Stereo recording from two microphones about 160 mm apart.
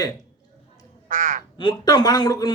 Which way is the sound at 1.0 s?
55° right (ahead or behind).